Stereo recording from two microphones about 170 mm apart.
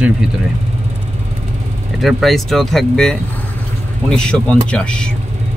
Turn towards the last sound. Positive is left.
turn(degrees=5)  # may be behind; listen again after turning